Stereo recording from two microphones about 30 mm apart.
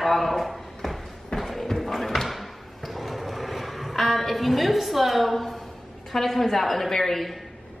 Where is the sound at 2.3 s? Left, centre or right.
Centre.